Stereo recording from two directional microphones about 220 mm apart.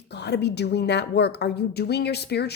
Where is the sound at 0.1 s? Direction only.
50° left (ahead or behind).